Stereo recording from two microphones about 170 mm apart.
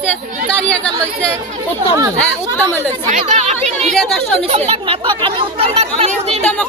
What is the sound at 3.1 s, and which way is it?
Speech, 45° right (ahead or behind).